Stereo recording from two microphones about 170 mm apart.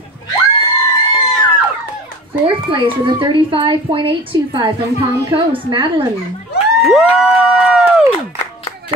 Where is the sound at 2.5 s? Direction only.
30° right (ahead or behind).